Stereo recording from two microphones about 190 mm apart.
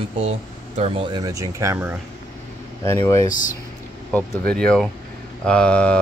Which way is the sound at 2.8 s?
15° left (ahead or behind).